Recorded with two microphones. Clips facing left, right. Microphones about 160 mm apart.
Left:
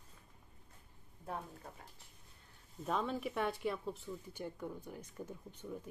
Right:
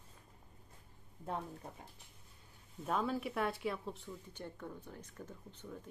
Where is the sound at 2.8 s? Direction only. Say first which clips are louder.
Right 1 dB; 5° right (ahead or behind).